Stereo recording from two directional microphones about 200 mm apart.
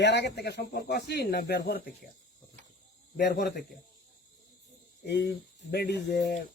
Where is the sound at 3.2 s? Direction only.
55° left (ahead or behind).